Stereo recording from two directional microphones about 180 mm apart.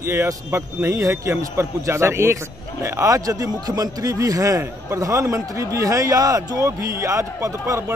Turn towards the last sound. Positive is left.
turn(degrees=-15)  # may be behind; listen again after turning